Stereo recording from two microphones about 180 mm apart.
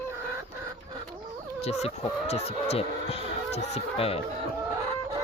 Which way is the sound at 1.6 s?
35° left (ahead or behind).